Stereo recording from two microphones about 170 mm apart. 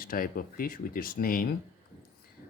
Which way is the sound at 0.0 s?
60° left (ahead or behind).